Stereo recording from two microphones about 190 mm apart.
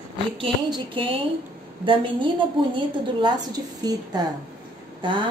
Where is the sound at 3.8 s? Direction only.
20° right (ahead or behind).